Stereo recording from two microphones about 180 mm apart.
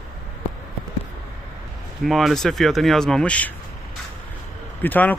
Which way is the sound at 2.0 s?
Centre (ahead or behind).